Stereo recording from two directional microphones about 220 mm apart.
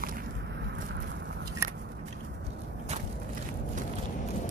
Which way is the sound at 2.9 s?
30° right (ahead or behind).